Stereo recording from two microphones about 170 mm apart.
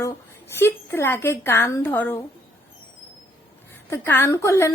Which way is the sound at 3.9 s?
10° left (ahead or behind).